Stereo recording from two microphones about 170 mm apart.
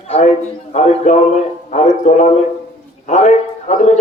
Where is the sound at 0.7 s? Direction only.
40° left (ahead or behind).